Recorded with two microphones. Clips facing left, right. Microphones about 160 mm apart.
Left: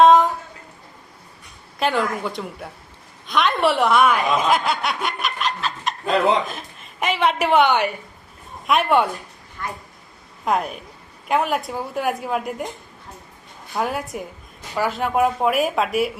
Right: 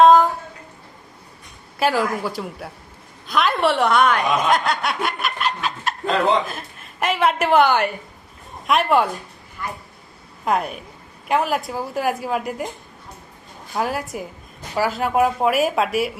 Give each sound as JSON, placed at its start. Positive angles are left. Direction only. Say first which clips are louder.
{"t": 0.0, "sound": "a sound", "louder": "right 1 dB", "side_deg": 0}
{"t": 1.8, "sound": "a woman's voice", "louder": "right 1 dB", "side_deg": -5}
{"t": 3.2, "sound": "snicker", "louder": "even", "side_deg": 0}
{"t": 6.5, "sound": "a woman's voice", "louder": "right 1 dB", "side_deg": 0}
{"t": 13.7, "sound": "a woman's voice", "louder": "even", "side_deg": 0}